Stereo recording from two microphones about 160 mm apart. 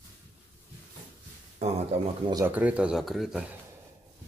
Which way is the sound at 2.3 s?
10° right (ahead or behind).